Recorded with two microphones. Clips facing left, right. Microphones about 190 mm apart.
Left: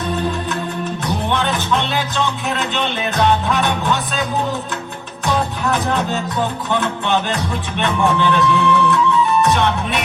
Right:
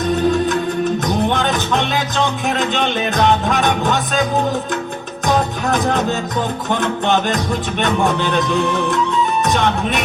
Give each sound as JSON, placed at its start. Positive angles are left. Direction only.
{"t": 1.0, "sound": "music", "side_deg": -45}